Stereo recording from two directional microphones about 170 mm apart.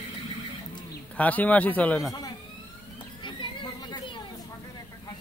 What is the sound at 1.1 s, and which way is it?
A man's voice, 10° left (ahead or behind).